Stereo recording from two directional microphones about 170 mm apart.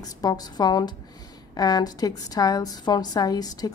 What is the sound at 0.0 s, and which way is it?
A woman's voice, 20° left (ahead or behind).